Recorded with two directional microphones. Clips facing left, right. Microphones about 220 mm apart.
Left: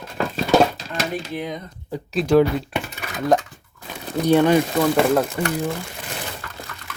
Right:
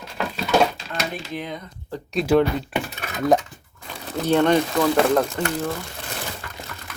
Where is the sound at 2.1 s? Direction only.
Centre (ahead or behind).